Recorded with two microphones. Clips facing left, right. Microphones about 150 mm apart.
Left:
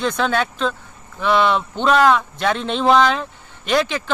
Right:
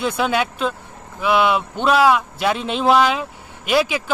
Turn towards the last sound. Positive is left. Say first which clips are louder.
# right 1 dB
turn(degrees=-10)  # may be behind; listen again after turning